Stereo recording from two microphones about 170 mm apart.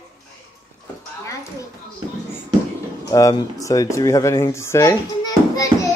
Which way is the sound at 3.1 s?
20° left (ahead or behind).